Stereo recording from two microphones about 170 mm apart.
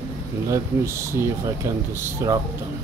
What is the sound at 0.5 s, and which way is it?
Speech, 15° right (ahead or behind).